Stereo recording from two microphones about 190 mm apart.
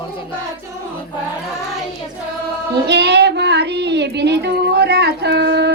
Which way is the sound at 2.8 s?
65° right (ahead or behind).